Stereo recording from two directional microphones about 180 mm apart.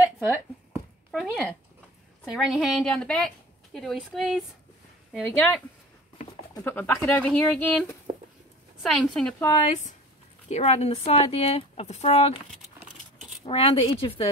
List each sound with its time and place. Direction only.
1.1 s a woman's voice: 5° right (ahead or behind)
9.4 s speech: 25° left (ahead or behind)
10.5 s speech: 35° left (ahead or behind)
13.5 s speech: 30° left (ahead or behind)